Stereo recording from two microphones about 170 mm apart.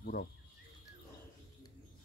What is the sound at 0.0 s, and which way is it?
Speech, 65° left (ahead or behind).